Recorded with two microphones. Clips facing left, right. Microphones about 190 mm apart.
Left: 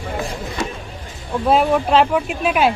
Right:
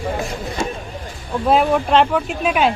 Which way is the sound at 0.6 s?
25° right (ahead or behind).